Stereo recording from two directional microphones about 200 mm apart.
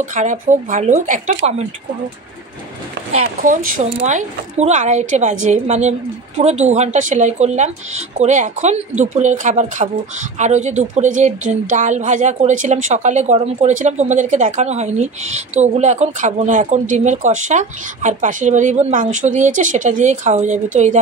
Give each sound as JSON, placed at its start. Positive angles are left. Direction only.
{"t": 0.0, "sound": "a woman's voice", "side_deg": -40}
{"t": 3.1, "sound": "a woman's voice", "side_deg": -40}